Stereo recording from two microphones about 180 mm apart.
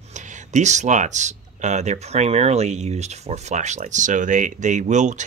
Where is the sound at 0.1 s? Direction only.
40° right (ahead or behind).